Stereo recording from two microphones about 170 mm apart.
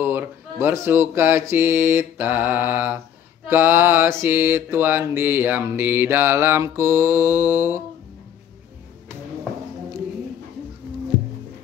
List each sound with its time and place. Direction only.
0.0 s mantra: 10° right (ahead or behind)